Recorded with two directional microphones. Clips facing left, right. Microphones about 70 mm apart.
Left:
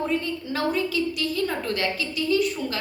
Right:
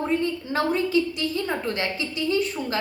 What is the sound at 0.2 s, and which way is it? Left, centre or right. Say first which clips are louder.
A woman's voice: right 3 dB; right.